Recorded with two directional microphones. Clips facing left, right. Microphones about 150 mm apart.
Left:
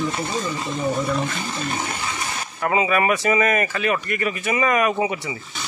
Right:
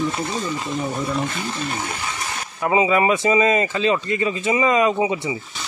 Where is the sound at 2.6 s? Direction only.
20° right (ahead or behind).